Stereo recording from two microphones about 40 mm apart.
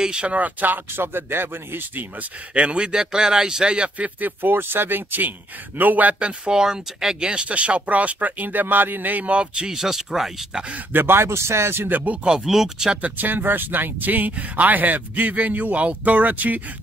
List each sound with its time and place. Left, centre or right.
0.0 s speech: right
0.4 s speech: right
0.9 s speech: right
2.5 s speech: right
4.2 s speech: right
5.8 s speech: right
6.1 s speech: right
6.5 s speech: centre; by 9.3 s right
9.3 s speech: right
9.8 s speech: centre
10.9 s speech: right
11.9 s speech: right
12.4 s speech: centre
13.2 s speech: right